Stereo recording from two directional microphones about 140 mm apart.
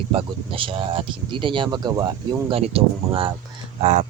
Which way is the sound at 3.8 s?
55° right (ahead or behind).